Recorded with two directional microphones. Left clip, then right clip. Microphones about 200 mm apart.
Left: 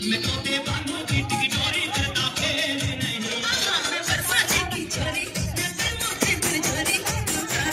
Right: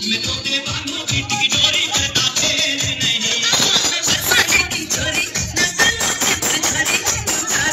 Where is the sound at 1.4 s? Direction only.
45° left (ahead or behind).